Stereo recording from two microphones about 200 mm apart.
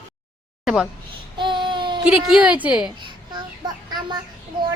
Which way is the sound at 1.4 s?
25° right (ahead or behind).